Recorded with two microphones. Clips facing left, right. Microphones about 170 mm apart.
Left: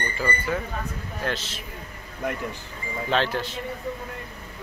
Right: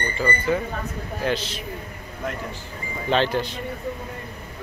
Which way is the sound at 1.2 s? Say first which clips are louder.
Right 5 dB; centre (ahead or behind).